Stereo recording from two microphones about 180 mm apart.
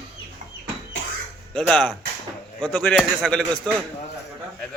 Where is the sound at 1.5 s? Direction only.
5° left (ahead or behind).